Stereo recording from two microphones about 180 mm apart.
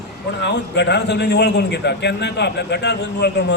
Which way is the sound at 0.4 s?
70° left (ahead or behind).